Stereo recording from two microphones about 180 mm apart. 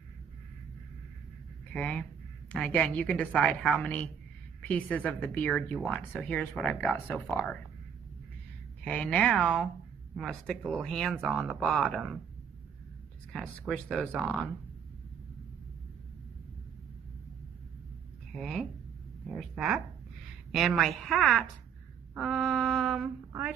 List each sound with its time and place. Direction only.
1.7 s speech: 5° left (ahead or behind)
8.8 s speech: 5° left (ahead or behind)
13.3 s speech: 5° left (ahead or behind)
18.3 s speech: centre (ahead or behind)